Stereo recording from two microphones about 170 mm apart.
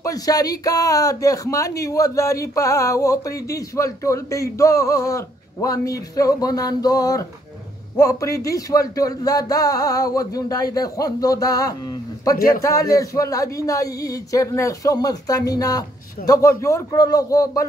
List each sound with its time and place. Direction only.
0.0 s speech: 20° left (ahead or behind)
12.4 s a man's voice: 65° left (ahead or behind)
12.9 s speech: 20° left (ahead or behind)